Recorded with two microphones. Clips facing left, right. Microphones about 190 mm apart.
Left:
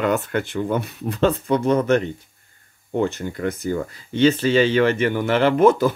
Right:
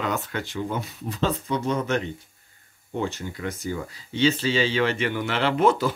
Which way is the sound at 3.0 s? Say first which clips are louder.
Left 6 dB; 55° left (ahead or behind).